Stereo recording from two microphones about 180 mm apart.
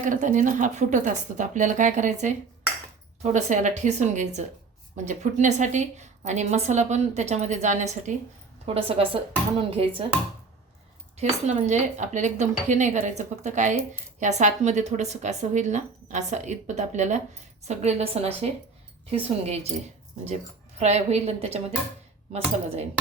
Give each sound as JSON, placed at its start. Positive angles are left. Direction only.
{"t": 0.0, "sound": "a woman's voice", "side_deg": -45}
{"t": 8.6, "sound": "speech", "side_deg": -35}
{"t": 11.2, "sound": "speech", "side_deg": -40}